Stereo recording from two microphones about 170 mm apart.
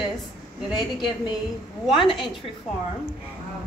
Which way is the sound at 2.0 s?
Centre (ahead or behind).